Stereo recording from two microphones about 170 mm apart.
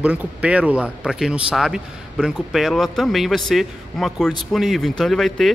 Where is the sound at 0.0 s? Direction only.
5° right (ahead or behind).